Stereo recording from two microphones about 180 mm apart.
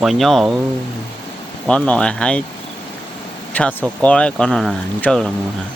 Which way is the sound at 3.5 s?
10° left (ahead or behind).